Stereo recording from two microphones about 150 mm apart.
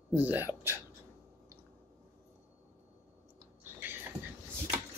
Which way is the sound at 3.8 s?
15° right (ahead or behind).